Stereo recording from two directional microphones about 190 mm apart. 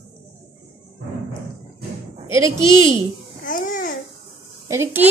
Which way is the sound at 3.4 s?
45° left (ahead or behind).